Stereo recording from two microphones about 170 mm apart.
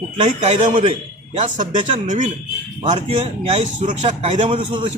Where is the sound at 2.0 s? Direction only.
45° right (ahead or behind).